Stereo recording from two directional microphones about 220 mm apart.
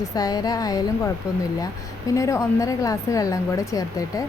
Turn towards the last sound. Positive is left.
turn(degrees=15)  # may be behind; listen again after turning